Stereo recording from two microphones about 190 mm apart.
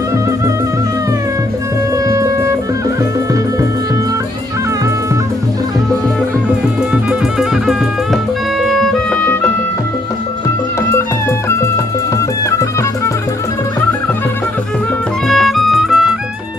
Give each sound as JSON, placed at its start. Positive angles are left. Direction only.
{"t": 2.0, "sound": "music", "side_deg": -15}
{"t": 6.9, "sound": "music", "side_deg": -5}
{"t": 10.9, "sound": "music", "side_deg": 15}
{"t": 15.2, "sound": "music", "side_deg": 0}